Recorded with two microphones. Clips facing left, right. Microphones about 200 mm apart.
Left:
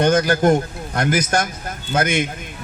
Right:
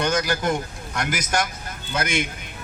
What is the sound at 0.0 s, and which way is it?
A man's voice, 50° left (ahead or behind).